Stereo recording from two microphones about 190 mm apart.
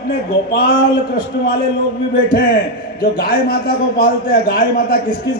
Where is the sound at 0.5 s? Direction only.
50° left (ahead or behind).